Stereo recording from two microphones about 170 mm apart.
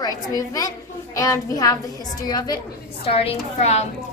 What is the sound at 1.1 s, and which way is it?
A child's voice, 20° left (ahead or behind).